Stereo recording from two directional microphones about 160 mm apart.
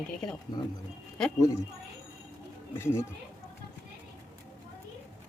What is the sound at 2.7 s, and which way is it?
Speech, 15° left (ahead or behind).